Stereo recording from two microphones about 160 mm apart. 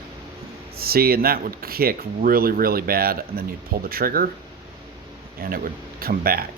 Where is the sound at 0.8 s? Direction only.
70° right (ahead or behind).